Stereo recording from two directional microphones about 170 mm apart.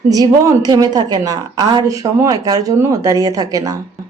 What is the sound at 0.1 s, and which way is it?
Speech, 20° right (ahead or behind).